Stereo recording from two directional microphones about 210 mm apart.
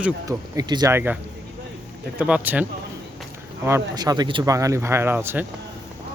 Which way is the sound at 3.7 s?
15° right (ahead or behind).